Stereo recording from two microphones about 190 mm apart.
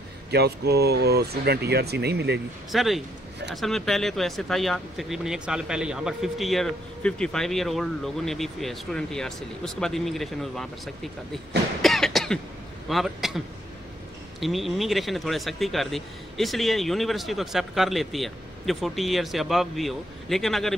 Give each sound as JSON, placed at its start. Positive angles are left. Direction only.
{"t": 0.3, "sound": "speech", "side_deg": -60}
{"t": 2.7, "sound": "speech", "side_deg": 0}
{"t": 11.8, "sound": "cough", "side_deg": 0}
{"t": 12.8, "sound": "speech", "side_deg": 0}
{"t": 14.4, "sound": "speech", "side_deg": 0}